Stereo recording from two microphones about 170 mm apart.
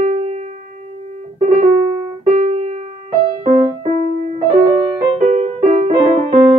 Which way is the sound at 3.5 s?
40° right (ahead or behind).